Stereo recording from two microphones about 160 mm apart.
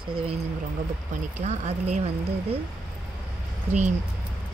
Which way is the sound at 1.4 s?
45° right (ahead or behind).